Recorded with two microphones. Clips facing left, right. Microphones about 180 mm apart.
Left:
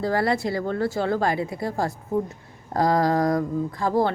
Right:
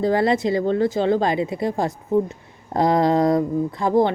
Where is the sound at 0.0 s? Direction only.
20° right (ahead or behind).